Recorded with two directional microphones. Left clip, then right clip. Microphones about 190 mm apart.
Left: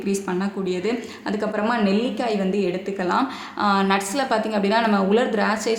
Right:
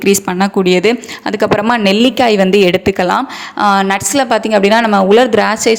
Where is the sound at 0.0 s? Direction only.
50° right (ahead or behind).